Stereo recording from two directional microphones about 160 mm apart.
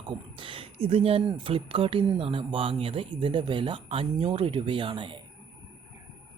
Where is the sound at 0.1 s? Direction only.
35° right (ahead or behind).